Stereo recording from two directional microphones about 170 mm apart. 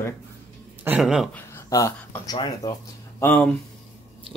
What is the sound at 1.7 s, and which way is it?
Speech, 15° left (ahead or behind).